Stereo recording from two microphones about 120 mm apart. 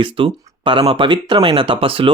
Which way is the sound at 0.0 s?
50° right (ahead or behind).